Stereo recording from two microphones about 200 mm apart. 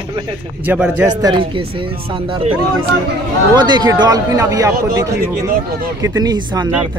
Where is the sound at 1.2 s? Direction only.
25° right (ahead or behind).